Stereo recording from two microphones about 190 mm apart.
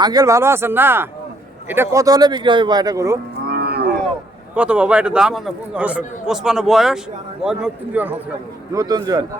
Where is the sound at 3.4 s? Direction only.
55° right (ahead or behind).